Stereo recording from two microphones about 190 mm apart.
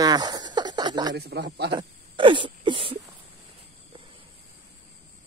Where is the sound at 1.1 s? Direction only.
60° right (ahead or behind).